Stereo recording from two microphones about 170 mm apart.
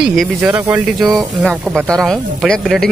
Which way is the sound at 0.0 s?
Centre (ahead or behind).